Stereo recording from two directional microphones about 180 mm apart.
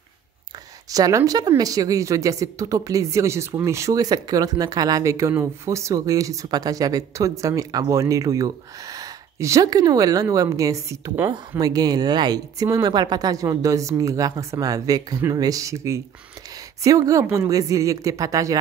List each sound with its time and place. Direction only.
0.8 s a woman's voice: 20° right (ahead or behind)